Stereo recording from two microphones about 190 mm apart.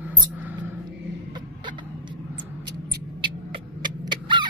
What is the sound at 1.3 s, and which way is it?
Vehicle, 25° right (ahead or behind).